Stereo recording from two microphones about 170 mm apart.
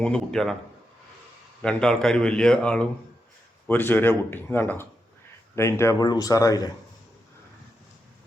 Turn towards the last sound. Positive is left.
turn(degrees=20)  # may be behind; listen again after turning